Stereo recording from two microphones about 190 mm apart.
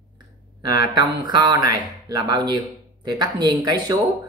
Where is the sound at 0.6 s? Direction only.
25° right (ahead or behind).